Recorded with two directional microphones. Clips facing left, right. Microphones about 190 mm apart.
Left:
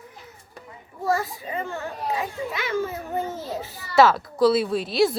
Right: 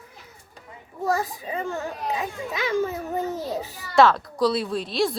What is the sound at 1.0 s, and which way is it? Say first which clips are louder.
Speech: even; 15° right (ahead or behind).